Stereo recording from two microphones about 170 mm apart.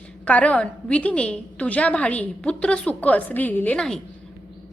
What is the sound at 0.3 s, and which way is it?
A woman's voice, 10° left (ahead or behind).